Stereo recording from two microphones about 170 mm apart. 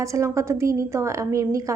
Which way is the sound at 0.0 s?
20° right (ahead or behind).